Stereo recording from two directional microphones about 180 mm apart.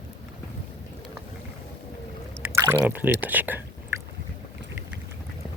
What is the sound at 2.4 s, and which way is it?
Speech, 10° right (ahead or behind).